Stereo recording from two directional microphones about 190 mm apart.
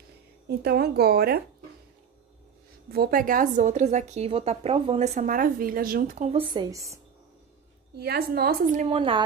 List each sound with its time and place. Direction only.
0.5 s speech: 55° right (ahead or behind)
2.9 s a woman's voice: 50° right (ahead or behind)
6.2 s speech: 25° right (ahead or behind)
7.9 s speech: 60° right (ahead or behind)
8.8 s speech: 30° right (ahead or behind)